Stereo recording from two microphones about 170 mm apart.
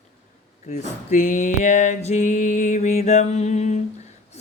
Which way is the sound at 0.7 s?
45° left (ahead or behind).